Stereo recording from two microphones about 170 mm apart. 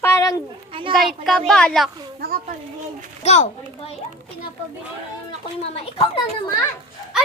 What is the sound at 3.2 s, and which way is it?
Speech, 40° left (ahead or behind).